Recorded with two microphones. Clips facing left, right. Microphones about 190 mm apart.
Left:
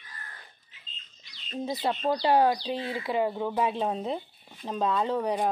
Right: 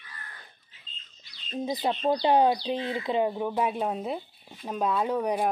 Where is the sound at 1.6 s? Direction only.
15° right (ahead or behind).